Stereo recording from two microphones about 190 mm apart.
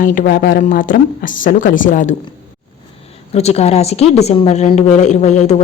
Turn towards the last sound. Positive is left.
turn(degrees=35)  # may be behind; listen again after turning